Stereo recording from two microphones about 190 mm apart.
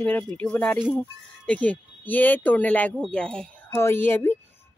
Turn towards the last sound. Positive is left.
turn(degrees=10)  # may be behind; listen again after turning